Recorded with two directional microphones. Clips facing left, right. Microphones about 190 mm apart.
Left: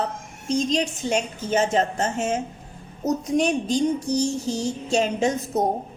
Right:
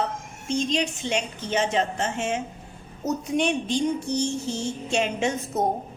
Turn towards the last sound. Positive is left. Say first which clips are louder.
# left 3 dB
turn(degrees=35)  # may be behind; listen again after turning